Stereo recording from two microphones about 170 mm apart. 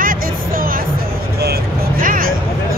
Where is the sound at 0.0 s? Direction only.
55° right (ahead or behind).